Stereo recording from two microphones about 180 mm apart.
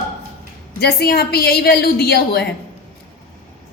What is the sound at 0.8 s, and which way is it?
Speech, 60° left (ahead or behind).